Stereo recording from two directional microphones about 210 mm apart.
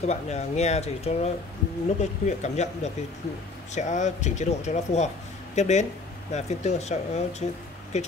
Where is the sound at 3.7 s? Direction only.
35° left (ahead or behind).